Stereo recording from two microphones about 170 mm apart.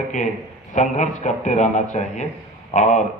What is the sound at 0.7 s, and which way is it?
A man's voice, 45° left (ahead or behind).